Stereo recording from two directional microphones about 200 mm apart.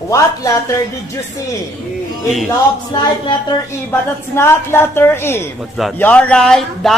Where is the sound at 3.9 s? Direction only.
10° left (ahead or behind).